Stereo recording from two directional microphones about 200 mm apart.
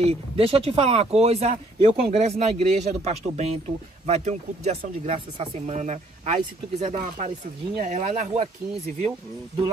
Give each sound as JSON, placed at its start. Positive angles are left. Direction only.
{"t": 0.0, "sound": "speech", "side_deg": -30}